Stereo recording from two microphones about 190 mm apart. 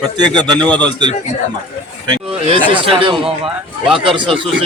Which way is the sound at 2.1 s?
30° right (ahead or behind).